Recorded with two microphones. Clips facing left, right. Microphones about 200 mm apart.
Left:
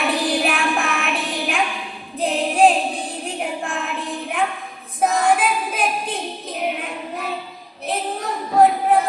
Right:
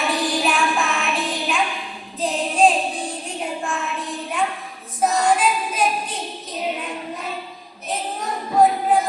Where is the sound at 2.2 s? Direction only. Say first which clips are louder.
Left 2 dB; 60° left (ahead or behind).